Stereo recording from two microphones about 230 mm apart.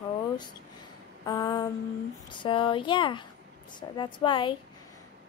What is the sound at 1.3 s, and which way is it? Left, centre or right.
A woman's voice, centre.